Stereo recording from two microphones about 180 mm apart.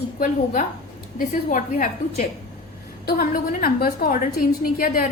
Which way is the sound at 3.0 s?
55° left (ahead or behind).